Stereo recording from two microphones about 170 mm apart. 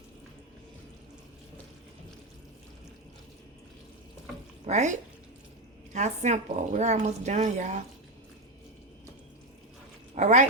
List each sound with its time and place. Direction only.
4.6 s a woman's voice: 45° right (ahead or behind)
10.2 s a woman's voice: 45° right (ahead or behind)